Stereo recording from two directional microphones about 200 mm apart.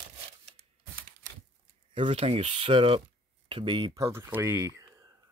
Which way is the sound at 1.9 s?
25° right (ahead or behind).